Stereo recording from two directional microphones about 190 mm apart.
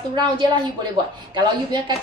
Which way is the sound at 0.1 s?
25° right (ahead or behind).